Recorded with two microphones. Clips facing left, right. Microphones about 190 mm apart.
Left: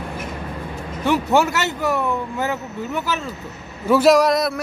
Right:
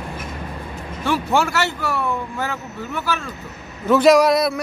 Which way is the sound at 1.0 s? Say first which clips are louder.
Left 2 dB; 20° left (ahead or behind).